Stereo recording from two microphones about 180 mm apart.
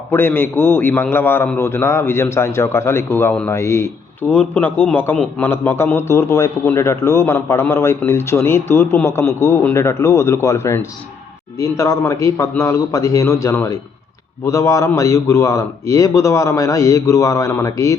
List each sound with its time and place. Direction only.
0.1 s a man's voice: 15° left (ahead or behind)